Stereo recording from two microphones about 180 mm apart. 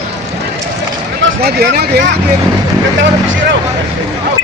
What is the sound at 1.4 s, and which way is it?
Speech, 60° right (ahead or behind).